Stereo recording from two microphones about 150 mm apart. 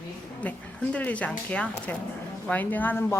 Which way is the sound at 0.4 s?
10° left (ahead or behind).